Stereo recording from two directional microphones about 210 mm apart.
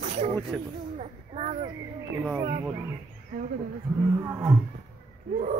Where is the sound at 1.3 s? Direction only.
30° right (ahead or behind).